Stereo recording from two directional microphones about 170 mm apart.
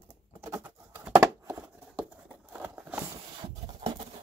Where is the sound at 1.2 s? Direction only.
15° right (ahead or behind).